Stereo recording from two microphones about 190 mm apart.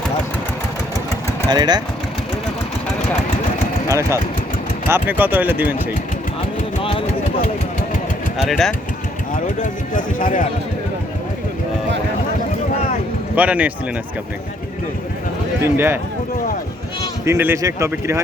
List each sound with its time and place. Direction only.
1.4 s speech: 20° right (ahead or behind)
3.8 s speech: 15° right (ahead or behind)
8.4 s speech: centre (ahead or behind)
9.3 s speech: 45° left (ahead or behind)
13.3 s speech: 5° right (ahead or behind)
15.6 s speech: 10° right (ahead or behind)
17.2 s speech: 15° right (ahead or behind)